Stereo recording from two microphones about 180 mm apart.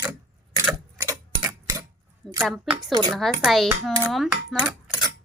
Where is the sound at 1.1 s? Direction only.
20° right (ahead or behind).